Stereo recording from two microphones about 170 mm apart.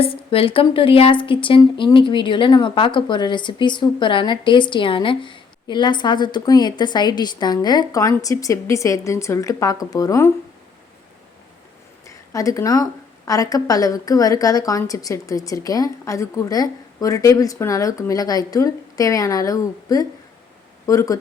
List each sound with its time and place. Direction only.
0.0 s speech: 35° left (ahead or behind); by 10.3 s 20° left (ahead or behind)
12.0 s speech: 20° left (ahead or behind)